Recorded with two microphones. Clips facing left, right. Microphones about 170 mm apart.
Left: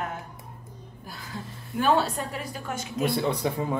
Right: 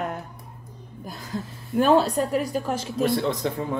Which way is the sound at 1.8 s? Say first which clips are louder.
Right 5 dB; 40° right (ahead or behind).